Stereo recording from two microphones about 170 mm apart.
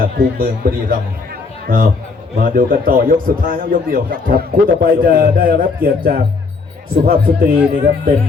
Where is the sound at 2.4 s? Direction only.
55° right (ahead or behind).